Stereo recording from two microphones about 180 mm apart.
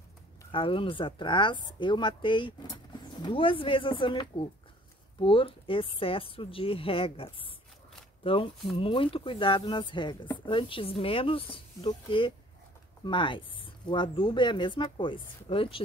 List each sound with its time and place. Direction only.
0.5 s speech: 30° left (ahead or behind)